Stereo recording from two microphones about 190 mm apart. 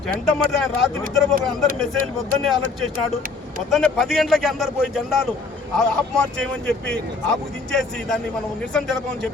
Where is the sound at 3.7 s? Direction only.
Centre (ahead or behind).